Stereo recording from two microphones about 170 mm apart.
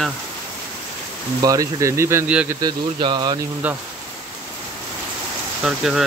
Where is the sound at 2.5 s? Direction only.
25° right (ahead or behind).